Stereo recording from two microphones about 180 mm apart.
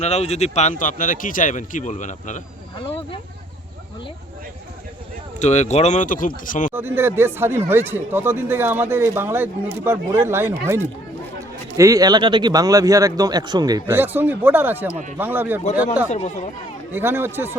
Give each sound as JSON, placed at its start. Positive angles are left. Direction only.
{"t": 0.0, "sound": "a man's voice", "side_deg": 35}
{"t": 5.4, "sound": "a man's voice", "side_deg": 40}
{"t": 6.7, "sound": "speech", "side_deg": -10}
{"t": 11.8, "sound": "speech", "side_deg": -20}
{"t": 16.0, "sound": "speech", "side_deg": 40}
{"t": 16.9, "sound": "speech", "side_deg": -15}